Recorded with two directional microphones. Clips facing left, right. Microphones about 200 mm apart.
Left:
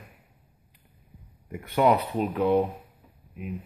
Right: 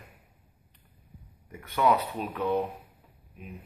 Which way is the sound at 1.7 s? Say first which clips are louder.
Left 3 dB; 30° left (ahead or behind).